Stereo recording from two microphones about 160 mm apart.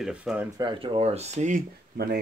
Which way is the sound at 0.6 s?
30° right (ahead or behind).